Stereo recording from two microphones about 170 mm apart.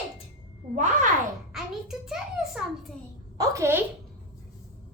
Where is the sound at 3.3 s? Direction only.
20° right (ahead or behind).